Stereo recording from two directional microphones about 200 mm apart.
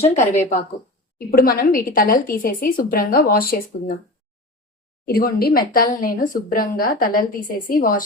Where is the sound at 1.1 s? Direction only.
45° left (ahead or behind).